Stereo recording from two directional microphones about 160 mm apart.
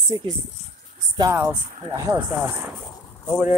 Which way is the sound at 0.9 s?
20° right (ahead or behind).